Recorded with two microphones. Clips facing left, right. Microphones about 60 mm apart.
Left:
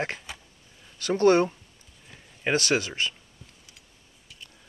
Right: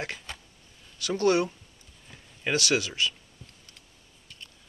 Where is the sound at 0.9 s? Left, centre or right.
Left.